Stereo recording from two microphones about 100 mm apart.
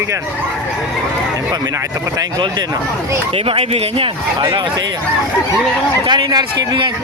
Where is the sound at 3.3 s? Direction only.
70° right (ahead or behind).